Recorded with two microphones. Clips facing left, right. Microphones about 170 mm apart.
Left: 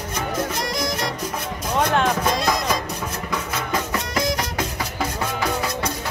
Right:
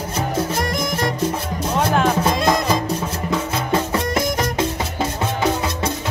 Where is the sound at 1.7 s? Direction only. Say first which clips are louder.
Right 2 dB; 5° right (ahead or behind).